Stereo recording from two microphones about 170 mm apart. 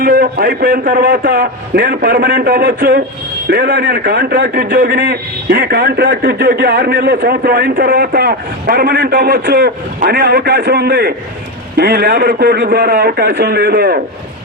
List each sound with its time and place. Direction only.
0.0 s a man's voice: 65° right (ahead or behind)